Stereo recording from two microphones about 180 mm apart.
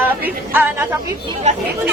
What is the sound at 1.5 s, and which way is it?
Speech, 40° right (ahead or behind).